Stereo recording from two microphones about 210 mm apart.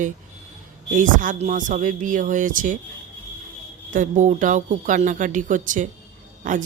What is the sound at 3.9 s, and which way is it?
Speech, 35° right (ahead or behind).